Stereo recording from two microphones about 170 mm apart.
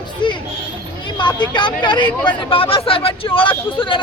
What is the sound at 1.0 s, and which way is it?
Speech, 25° left (ahead or behind).